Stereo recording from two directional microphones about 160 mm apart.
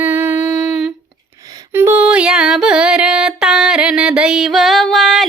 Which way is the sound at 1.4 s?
25° right (ahead or behind).